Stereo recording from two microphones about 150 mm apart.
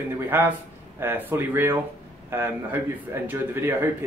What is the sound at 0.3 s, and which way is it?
Speech, 15° right (ahead or behind).